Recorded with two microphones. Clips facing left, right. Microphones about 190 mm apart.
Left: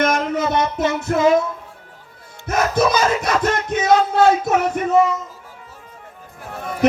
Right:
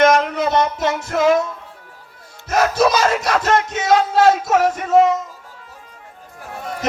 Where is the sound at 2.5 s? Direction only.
55° left (ahead or behind).